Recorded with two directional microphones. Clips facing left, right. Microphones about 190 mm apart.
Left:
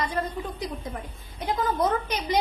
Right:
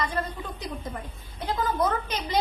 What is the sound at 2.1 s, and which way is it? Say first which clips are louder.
Speech: left 2 dB; 15° left (ahead or behind).